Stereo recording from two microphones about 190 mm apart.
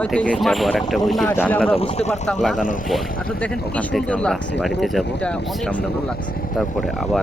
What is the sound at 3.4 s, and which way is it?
Speech, 5° left (ahead or behind).